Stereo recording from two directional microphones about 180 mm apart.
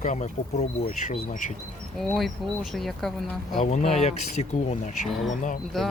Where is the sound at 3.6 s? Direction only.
40° left (ahead or behind).